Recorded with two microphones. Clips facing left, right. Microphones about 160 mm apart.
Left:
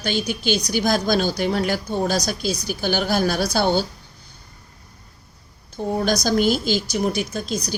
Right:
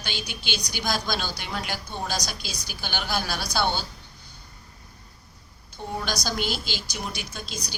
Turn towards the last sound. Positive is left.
turn(degrees=45)  # may be behind; listen again after turning